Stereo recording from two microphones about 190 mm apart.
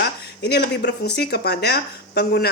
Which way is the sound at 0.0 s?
60° left (ahead or behind).